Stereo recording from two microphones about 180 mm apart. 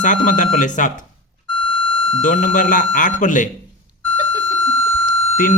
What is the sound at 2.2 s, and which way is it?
Speech, 45° left (ahead or behind).